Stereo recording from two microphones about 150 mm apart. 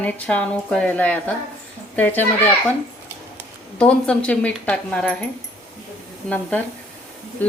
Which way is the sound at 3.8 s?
10° left (ahead or behind).